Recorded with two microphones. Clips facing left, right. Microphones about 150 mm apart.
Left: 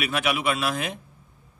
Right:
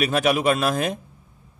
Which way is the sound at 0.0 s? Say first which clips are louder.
Right 6 dB; 40° right (ahead or behind).